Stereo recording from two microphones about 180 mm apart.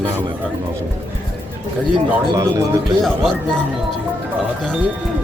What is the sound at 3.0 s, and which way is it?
Speech, centre (ahead or behind).